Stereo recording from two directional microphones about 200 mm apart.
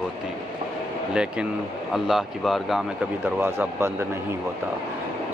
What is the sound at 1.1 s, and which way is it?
Speech, 5° right (ahead or behind).